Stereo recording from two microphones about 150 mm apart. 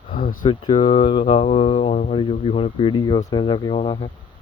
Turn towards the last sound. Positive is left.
turn(degrees=30)  # may be behind; listen again after turning